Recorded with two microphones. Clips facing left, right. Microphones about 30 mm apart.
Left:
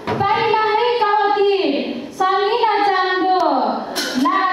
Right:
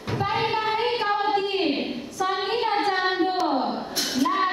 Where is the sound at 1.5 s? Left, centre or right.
Left.